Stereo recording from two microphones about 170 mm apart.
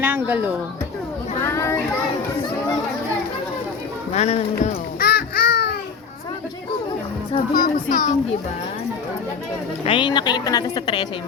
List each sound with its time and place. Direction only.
0.0 s speech: 10° right (ahead or behind)
1.4 s children playing: 15° left (ahead or behind)
4.1 s speech: 40° left (ahead or behind)
4.9 s babbling: 60° left (ahead or behind)
7.5 s speech: 55° left (ahead or behind)
9.8 s a woman's voice: 30° left (ahead or behind)